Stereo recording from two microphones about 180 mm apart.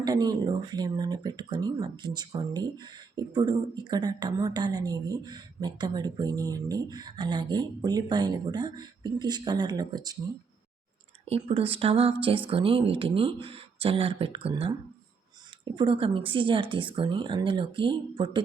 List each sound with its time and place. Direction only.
0.0 s speech: 20° right (ahead or behind)
11.3 s speech: 35° right (ahead or behind)